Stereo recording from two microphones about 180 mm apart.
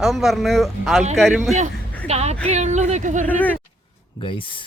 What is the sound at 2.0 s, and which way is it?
Speech, 35° right (ahead or behind).